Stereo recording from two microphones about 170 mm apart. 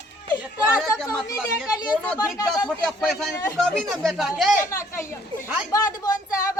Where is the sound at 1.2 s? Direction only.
20° left (ahead or behind).